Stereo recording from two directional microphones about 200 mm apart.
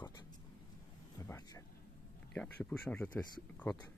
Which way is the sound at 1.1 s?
15° left (ahead or behind).